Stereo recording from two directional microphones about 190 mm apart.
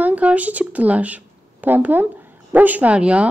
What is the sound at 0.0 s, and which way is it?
Speech, 5° right (ahead or behind).